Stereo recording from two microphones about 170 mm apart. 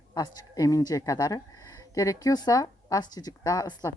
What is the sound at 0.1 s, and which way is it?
Speech, 25° left (ahead or behind).